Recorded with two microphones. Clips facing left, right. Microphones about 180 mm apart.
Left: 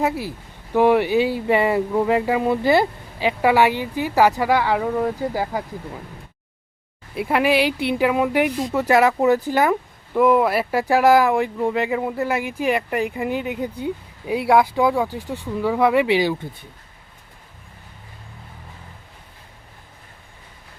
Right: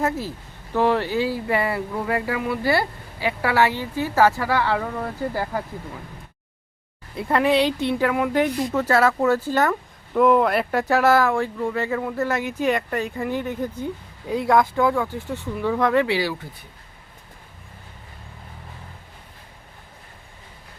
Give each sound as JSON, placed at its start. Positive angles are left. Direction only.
{"t": 0.0, "sound": "speech", "side_deg": 15}
{"t": 7.2, "sound": "speech", "side_deg": 10}